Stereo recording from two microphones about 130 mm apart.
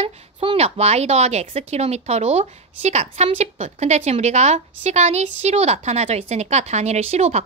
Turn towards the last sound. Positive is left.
turn(degrees=-55)  # may be behind; listen again after turning